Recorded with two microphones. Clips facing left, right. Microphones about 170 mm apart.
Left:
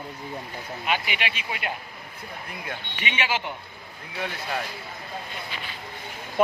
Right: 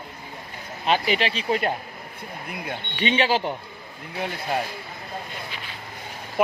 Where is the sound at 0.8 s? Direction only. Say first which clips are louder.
Right 7 dB; 35° right (ahead or behind).